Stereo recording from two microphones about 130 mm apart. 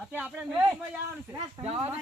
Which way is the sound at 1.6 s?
55° right (ahead or behind).